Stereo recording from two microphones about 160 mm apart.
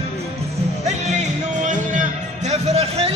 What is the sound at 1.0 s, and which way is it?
Music, 50° right (ahead or behind).